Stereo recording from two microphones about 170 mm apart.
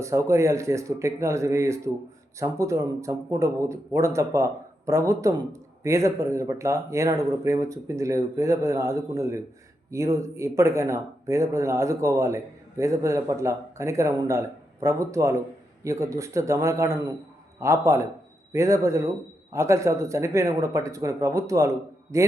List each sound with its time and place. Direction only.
0.0 s speech: 15° right (ahead or behind)